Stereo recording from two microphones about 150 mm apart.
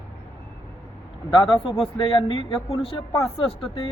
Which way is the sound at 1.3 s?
30° left (ahead or behind).